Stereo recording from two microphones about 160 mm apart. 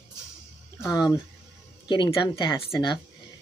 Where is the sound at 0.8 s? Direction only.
25° left (ahead or behind).